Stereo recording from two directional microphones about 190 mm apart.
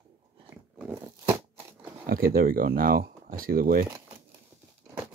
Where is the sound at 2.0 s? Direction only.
50° right (ahead or behind).